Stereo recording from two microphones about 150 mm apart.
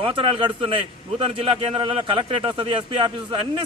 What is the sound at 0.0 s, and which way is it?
A man's voice, 35° right (ahead or behind).